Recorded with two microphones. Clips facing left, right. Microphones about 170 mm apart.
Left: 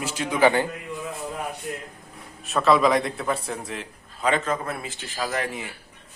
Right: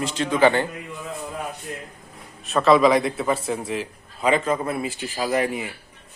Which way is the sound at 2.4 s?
Centre (ahead or behind).